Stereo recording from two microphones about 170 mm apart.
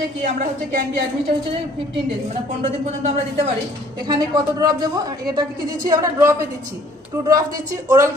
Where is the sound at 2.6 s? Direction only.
40° right (ahead or behind).